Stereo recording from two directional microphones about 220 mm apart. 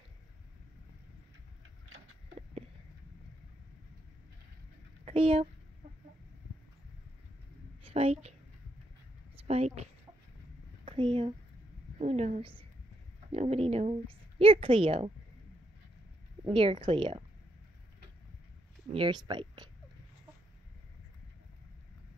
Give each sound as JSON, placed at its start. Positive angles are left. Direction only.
{"t": 5.0, "sound": "speech", "side_deg": -25}
{"t": 7.8, "sound": "a woman's voice", "side_deg": -25}
{"t": 9.5, "sound": "a woman's voice", "side_deg": -30}
{"t": 10.9, "sound": "a woman's voice", "side_deg": -20}
{"t": 16.4, "sound": "a woman's voice", "side_deg": -25}
{"t": 18.9, "sound": "a woman's voice", "side_deg": -20}